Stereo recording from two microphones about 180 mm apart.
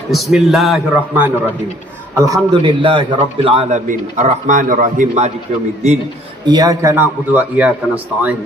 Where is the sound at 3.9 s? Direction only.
45° right (ahead or behind).